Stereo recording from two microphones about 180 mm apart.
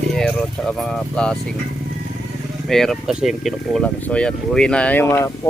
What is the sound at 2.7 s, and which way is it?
Speech, centre (ahead or behind).